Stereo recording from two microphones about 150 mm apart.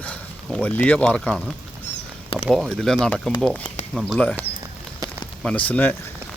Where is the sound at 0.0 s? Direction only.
10° left (ahead or behind).